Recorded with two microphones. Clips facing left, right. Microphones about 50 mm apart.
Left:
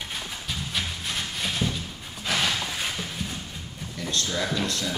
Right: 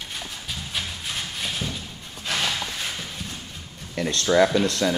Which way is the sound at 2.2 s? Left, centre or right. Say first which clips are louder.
Even; centre.